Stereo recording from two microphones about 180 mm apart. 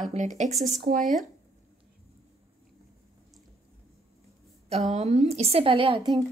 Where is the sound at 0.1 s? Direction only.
40° right (ahead or behind).